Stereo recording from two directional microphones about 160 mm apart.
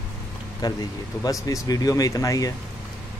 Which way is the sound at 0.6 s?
25° left (ahead or behind).